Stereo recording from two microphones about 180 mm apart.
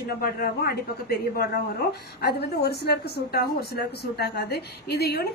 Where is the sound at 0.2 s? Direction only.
55° left (ahead or behind).